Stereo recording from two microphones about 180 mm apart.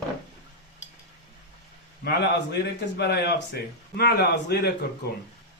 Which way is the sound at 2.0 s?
70° left (ahead or behind).